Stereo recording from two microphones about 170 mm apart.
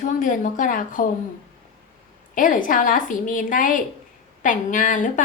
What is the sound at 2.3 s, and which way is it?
Speech, 50° left (ahead or behind).